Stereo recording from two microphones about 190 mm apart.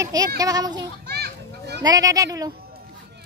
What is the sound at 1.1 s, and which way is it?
Children playing, 60° right (ahead or behind).